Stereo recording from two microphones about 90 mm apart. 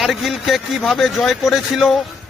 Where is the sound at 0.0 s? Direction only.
Centre (ahead or behind).